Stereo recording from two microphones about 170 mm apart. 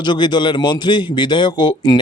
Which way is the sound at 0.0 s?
25° left (ahead or behind).